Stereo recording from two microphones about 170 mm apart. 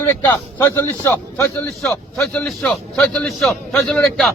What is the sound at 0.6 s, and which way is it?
Speech, 15° left (ahead or behind).